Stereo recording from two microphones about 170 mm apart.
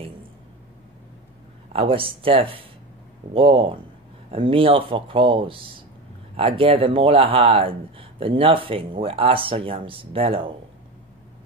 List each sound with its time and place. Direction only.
1.7 s speech: 35° right (ahead or behind)